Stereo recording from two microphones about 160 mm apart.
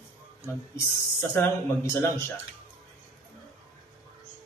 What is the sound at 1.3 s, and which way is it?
Speech, 15° left (ahead or behind).